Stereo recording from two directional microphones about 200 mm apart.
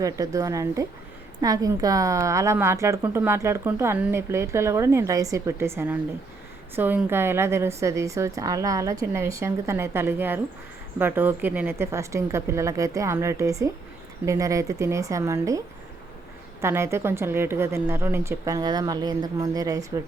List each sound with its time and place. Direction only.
0.0 s a woman's voice: 15° right (ahead or behind)